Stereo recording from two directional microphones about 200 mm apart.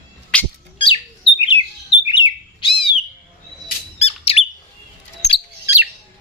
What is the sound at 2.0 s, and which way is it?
Bird, 25° left (ahead or behind).